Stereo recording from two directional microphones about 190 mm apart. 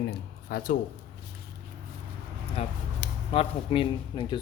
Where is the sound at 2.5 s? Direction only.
30° left (ahead or behind).